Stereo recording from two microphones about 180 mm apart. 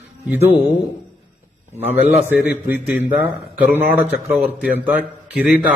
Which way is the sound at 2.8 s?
10° right (ahead or behind).